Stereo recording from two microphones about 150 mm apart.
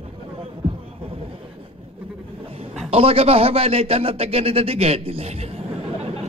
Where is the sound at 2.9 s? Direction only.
40° right (ahead or behind).